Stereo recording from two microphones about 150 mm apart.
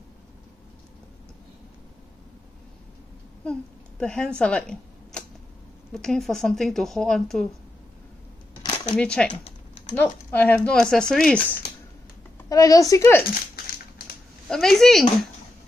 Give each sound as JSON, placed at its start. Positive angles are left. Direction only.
{"t": 4.0, "sound": "speech", "side_deg": 5}
{"t": 4.4, "sound": "a sound", "side_deg": 5}
{"t": 5.9, "sound": "speech", "side_deg": 5}
{"t": 8.8, "sound": "speech", "side_deg": 5}
{"t": 12.4, "sound": "a woman's voice", "side_deg": 20}
{"t": 14.5, "sound": "speech", "side_deg": 0}